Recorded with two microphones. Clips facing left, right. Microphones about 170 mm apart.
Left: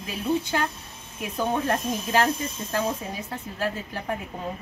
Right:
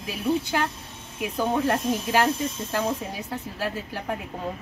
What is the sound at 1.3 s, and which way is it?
A woman's voice, 5° right (ahead or behind).